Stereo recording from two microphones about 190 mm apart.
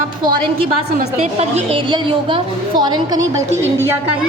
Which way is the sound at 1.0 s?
35° right (ahead or behind).